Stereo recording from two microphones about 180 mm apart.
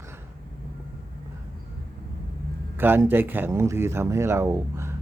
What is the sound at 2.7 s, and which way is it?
Speech, 10° right (ahead or behind).